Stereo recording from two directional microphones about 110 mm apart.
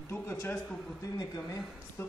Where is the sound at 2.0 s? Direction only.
25° left (ahead or behind).